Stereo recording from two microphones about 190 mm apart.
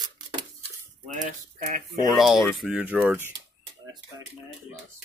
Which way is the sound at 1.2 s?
45° right (ahead or behind).